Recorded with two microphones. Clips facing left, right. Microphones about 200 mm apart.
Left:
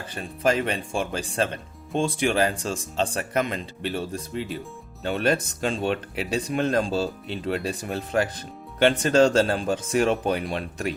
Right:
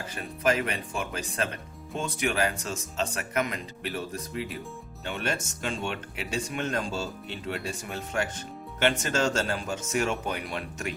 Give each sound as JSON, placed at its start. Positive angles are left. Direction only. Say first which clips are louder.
{"t": 0.1, "sound": "speech", "louder": "left 3 dB", "side_deg": 30}